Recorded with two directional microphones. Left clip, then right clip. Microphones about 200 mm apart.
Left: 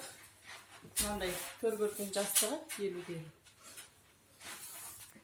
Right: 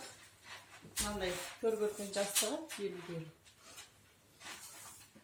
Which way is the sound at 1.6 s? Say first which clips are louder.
Even; 40° left (ahead or behind).